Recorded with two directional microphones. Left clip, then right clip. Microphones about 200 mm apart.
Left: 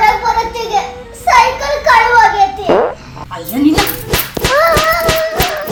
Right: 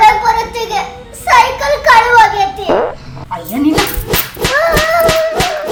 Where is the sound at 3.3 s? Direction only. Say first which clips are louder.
Left 1 dB; 25° right (ahead or behind).